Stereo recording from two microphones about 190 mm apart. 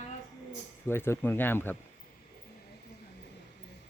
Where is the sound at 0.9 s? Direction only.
10° left (ahead or behind).